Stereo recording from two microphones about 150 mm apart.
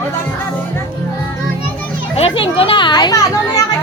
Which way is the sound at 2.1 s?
40° left (ahead or behind).